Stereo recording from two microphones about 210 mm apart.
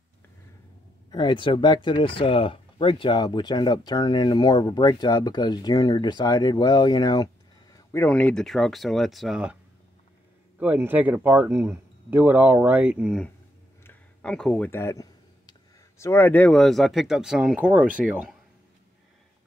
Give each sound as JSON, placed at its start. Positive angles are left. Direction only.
{"t": 1.1, "sound": "speech", "side_deg": 20}
{"t": 7.9, "sound": "speech", "side_deg": 10}
{"t": 10.6, "sound": "speech", "side_deg": -10}
{"t": 13.8, "sound": "a sound", "side_deg": 5}
{"t": 16.0, "sound": "speech", "side_deg": 10}